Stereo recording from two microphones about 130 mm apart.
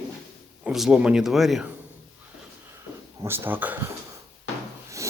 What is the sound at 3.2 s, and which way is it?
Speech, 15° right (ahead or behind).